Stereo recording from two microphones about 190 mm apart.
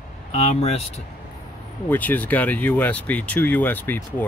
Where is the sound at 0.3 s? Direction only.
35° left (ahead or behind).